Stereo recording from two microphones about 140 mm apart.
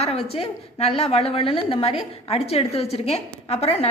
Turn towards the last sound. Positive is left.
turn(degrees=50)  # may be behind; listen again after turning